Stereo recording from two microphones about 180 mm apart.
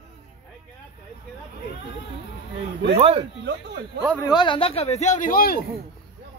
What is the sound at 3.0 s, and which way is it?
Speech, 35° right (ahead or behind).